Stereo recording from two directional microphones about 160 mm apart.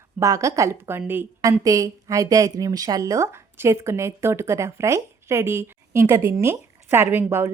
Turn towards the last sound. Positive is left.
turn(degrees=-15)  # may be behind; listen again after turning